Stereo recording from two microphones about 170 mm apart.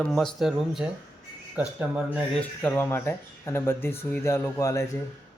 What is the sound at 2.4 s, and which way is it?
Speech, 10° left (ahead or behind).